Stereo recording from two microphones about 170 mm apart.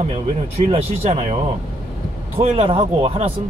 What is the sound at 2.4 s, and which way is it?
Speech, 35° right (ahead or behind).